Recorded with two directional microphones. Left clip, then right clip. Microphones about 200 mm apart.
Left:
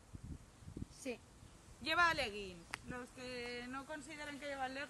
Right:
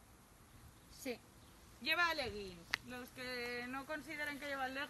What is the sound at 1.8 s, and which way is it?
Speech, 25° left (ahead or behind).